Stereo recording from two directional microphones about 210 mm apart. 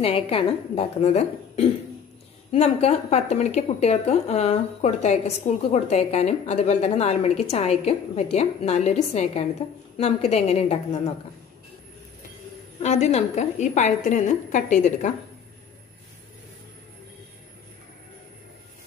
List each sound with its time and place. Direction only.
0.0 s a woman's voice: 25° left (ahead or behind)
12.8 s a woman's voice: 30° left (ahead or behind)